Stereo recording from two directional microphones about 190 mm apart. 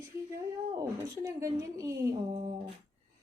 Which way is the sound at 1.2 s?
15° right (ahead or behind).